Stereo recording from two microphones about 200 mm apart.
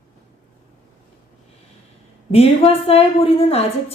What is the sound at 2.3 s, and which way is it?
A woman's voice, 30° left (ahead or behind).